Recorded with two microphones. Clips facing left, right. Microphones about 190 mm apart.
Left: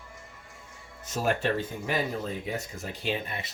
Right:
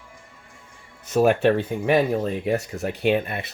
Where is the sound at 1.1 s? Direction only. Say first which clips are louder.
Right 10 dB; 60° right (ahead or behind).